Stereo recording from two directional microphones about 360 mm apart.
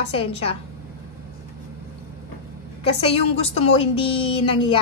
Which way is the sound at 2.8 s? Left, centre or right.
Centre.